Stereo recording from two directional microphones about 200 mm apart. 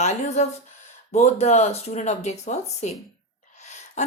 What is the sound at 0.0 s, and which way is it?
A woman's voice, 35° left (ahead or behind).